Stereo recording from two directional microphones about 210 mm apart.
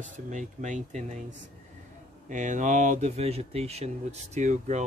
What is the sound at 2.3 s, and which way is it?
Speech, 35° right (ahead or behind).